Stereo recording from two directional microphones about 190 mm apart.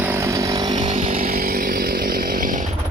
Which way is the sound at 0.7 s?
40° right (ahead or behind).